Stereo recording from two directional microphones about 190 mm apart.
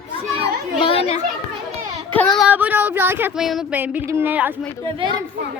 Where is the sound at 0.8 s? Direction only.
30° left (ahead or behind).